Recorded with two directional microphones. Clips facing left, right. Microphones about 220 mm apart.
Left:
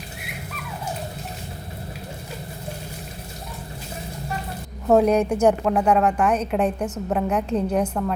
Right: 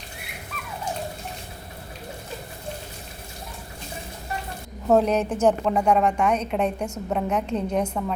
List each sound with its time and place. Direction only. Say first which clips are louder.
4.9 s a woman's voice: left 4 dB; 10° left (ahead or behind)